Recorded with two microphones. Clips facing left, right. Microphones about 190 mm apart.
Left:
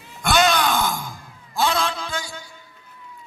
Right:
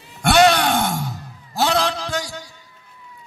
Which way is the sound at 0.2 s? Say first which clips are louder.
Right 4 dB; 65° right (ahead or behind).